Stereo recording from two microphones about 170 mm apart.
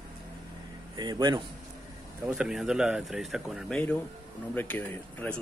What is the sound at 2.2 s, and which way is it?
Speech, 5° right (ahead or behind).